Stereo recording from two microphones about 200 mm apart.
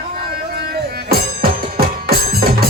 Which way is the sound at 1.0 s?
50° right (ahead or behind).